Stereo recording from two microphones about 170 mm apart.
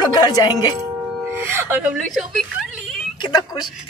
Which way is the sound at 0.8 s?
15° right (ahead or behind).